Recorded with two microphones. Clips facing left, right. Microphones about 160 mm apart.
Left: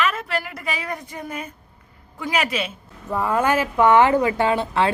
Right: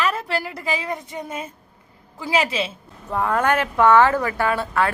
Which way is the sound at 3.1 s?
5° left (ahead or behind).